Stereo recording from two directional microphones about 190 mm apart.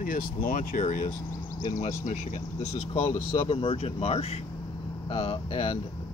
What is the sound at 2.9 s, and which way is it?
Speech, 30° left (ahead or behind).